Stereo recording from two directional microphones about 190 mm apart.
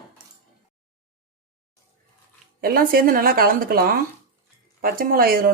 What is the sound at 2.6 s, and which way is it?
Speech, 50° right (ahead or behind).